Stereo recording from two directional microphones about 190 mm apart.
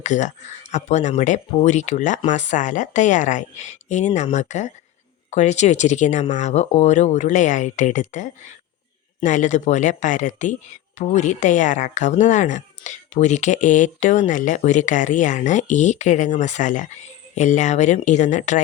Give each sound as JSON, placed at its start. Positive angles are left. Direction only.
{"t": 0.0, "sound": "speech", "side_deg": 40}